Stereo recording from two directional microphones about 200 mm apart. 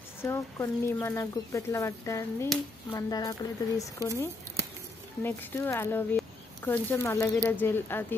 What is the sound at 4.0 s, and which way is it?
Speech, 15° right (ahead or behind).